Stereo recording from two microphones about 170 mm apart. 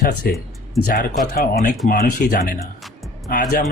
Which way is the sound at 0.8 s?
Centre (ahead or behind).